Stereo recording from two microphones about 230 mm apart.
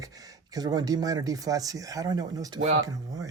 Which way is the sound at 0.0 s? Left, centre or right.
Centre.